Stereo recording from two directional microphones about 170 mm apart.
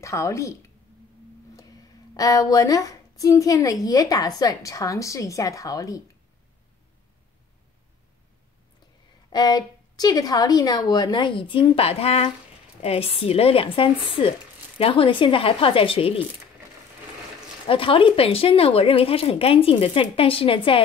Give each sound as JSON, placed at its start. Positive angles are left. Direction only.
{"t": 0.0, "sound": "a woman's voice", "side_deg": 15}
{"t": 9.3, "sound": "a woman's voice", "side_deg": 25}
{"t": 17.6, "sound": "speech", "side_deg": 30}